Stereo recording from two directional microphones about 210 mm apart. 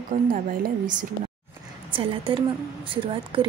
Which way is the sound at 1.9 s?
25° right (ahead or behind).